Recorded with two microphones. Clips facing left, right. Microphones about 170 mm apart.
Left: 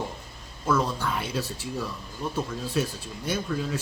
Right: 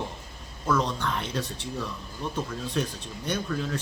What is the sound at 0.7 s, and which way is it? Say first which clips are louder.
Speech: left 1 dB; 5° left (ahead or behind).